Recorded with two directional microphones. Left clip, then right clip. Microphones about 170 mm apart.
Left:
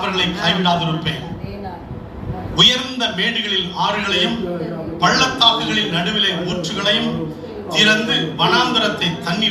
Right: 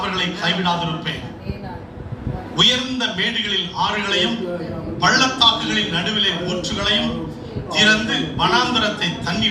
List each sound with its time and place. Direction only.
0.1 s a man's voice: 30° left (ahead or behind)
2.6 s a man's voice: 25° left (ahead or behind)